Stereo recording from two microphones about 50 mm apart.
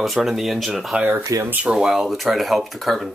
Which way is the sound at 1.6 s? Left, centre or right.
Centre.